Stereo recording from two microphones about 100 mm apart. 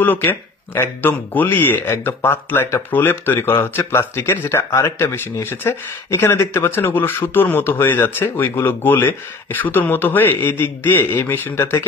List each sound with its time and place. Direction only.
0.0 s speech: 20° left (ahead or behind)